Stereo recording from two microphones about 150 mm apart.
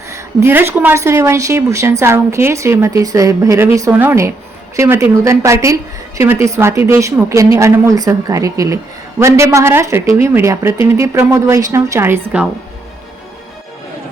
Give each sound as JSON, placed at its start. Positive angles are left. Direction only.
{"t": 0.1, "sound": "a woman's voice", "side_deg": -20}